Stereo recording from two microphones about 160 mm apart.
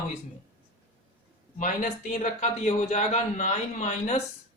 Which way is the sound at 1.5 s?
50° left (ahead or behind).